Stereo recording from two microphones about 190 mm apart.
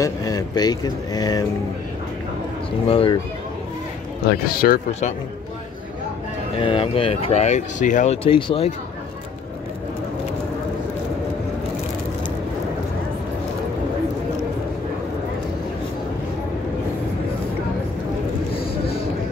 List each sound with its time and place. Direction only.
0.0 s speech: 20° left (ahead or behind)
2.9 s speech: 30° left (ahead or behind)
4.5 s speech: 50° left (ahead or behind)
6.6 s speech: 30° left (ahead or behind)
18.6 s a sound: 55° left (ahead or behind)